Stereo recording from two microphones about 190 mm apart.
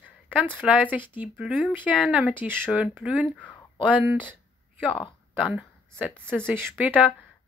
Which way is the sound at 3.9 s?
10° right (ahead or behind).